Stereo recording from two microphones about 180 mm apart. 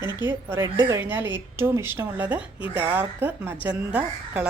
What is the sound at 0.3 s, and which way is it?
A woman's voice, 15° right (ahead or behind).